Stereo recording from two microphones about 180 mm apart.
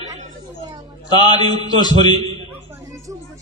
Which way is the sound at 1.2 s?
25° left (ahead or behind).